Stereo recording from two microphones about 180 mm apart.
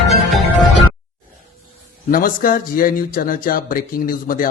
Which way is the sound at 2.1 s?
50° left (ahead or behind).